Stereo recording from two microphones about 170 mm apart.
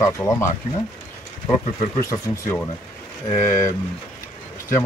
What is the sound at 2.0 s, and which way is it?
Speech, 15° left (ahead or behind).